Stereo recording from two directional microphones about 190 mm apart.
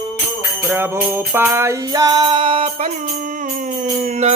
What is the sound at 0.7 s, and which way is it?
Music, 10° right (ahead or behind).